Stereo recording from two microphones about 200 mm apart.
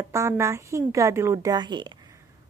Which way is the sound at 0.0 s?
15° right (ahead or behind).